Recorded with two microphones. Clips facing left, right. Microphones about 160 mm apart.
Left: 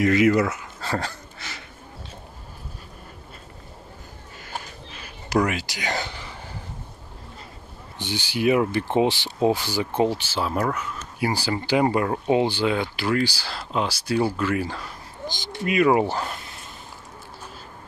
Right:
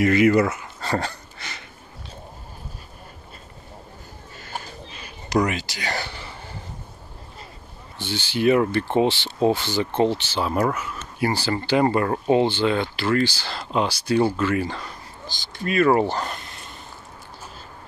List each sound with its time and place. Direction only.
0.0 s speech: centre (ahead or behind)
5.3 s speech: 5° left (ahead or behind)
8.0 s speech: 15° left (ahead or behind); by 10.9 s centre (ahead or behind)
11.1 s speech: 10° left (ahead or behind)
15.2 s speech: 20° left (ahead or behind); by 16.6 s 5° left (ahead or behind)